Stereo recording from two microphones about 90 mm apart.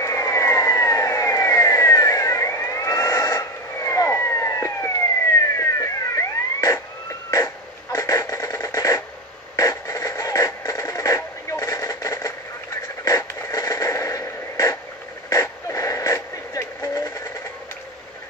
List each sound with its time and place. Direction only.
0.0 s vehicle: 35° left (ahead or behind)
5.6 s a sound: 35° left (ahead or behind)
9.6 s radio: 35° left (ahead or behind)